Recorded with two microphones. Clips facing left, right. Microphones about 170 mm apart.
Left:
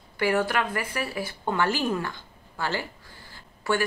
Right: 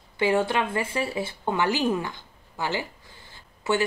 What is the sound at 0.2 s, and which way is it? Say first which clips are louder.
Speech: right 1 dB; 25° right (ahead or behind).